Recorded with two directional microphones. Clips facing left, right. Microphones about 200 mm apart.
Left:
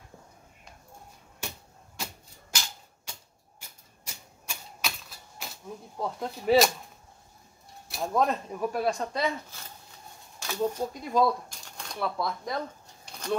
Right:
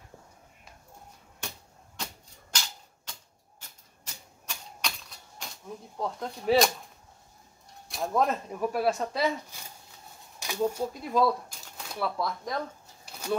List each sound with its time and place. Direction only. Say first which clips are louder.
3.1 s typewriter: left 1 dB; 10° left (ahead or behind)
7.9 s speech: even; centre (ahead or behind)